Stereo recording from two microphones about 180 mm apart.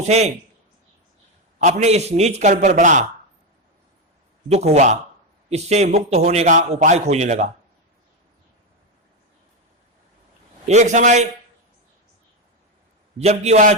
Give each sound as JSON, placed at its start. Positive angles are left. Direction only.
{"t": 0.1, "sound": "a man's voice", "side_deg": -35}
{"t": 1.5, "sound": "a man's voice", "side_deg": -40}
{"t": 4.4, "sound": "a man's voice", "side_deg": -35}
{"t": 10.7, "sound": "a man's voice", "side_deg": -40}
{"t": 13.1, "sound": "a man's voice", "side_deg": -35}